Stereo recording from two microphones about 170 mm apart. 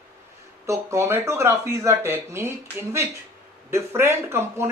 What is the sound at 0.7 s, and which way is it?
Speech, 15° right (ahead or behind).